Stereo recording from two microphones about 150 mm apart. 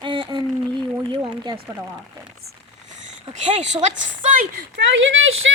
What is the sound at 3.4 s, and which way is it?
A woman's voice, 50° right (ahead or behind).